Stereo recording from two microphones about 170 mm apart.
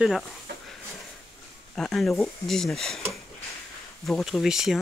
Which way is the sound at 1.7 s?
5° left (ahead or behind).